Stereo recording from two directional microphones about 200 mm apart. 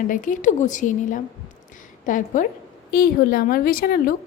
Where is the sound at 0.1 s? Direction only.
40° left (ahead or behind).